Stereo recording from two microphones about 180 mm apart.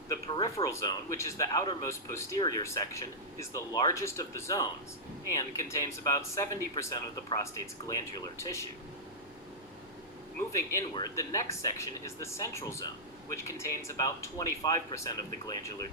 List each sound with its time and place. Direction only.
0.3 s speech: 25° left (ahead or behind)
8.4 s speech: 15° left (ahead or behind)
10.8 s speech: 20° left (ahead or behind)